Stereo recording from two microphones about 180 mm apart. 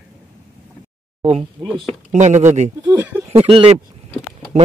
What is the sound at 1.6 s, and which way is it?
Speech, 25° right (ahead or behind).